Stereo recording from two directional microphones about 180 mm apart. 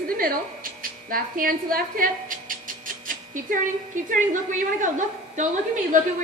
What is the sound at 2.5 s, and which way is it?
Music, 50° right (ahead or behind).